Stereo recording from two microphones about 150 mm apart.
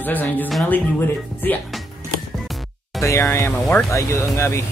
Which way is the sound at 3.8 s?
20° left (ahead or behind).